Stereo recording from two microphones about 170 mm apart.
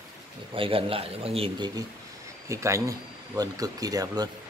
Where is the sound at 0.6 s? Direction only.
35° right (ahead or behind).